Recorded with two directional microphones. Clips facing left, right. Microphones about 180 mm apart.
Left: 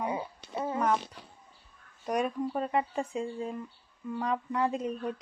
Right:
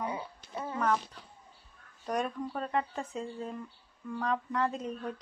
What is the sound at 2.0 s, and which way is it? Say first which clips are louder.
A woman's voice: left 3 dB; 10° left (ahead or behind).